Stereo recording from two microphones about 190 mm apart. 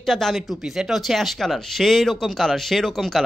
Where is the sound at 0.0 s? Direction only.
Centre (ahead or behind).